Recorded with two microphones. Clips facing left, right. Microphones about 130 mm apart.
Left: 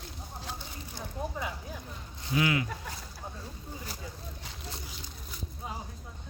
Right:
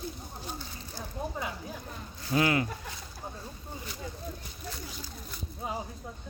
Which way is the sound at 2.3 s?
45° right (ahead or behind).